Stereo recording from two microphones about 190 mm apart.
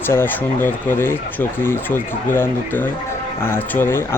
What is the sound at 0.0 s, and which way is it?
Speech, 10° left (ahead or behind).